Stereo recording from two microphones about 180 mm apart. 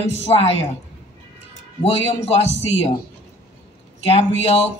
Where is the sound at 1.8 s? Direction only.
35° left (ahead or behind).